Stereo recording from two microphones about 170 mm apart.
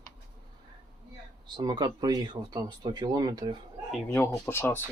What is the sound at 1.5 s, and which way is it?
Speech, 25° right (ahead or behind).